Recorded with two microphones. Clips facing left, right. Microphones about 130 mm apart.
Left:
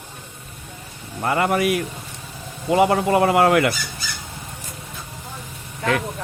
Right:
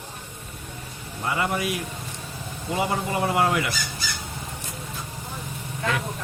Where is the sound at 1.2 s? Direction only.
60° left (ahead or behind).